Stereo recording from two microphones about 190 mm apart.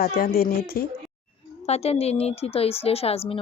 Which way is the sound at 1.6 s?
35° left (ahead or behind).